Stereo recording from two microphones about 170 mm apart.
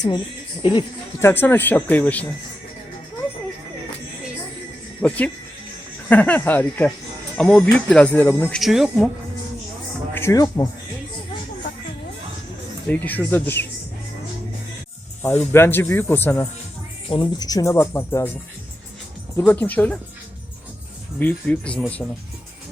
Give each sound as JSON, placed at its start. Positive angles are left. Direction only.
{"t": 0.6, "sound": "speech", "side_deg": 30}
{"t": 1.2, "sound": "speech", "side_deg": 15}
{"t": 5.0, "sound": "speech", "side_deg": 10}
{"t": 8.5, "sound": "speech", "side_deg": 0}
{"t": 10.2, "sound": "speech", "side_deg": 20}
{"t": 12.9, "sound": "speech", "side_deg": 10}
{"t": 15.2, "sound": "speech", "side_deg": 15}
{"t": 17.1, "sound": "speech", "side_deg": 25}
{"t": 19.4, "sound": "speech", "side_deg": 10}
{"t": 21.2, "sound": "speech", "side_deg": 10}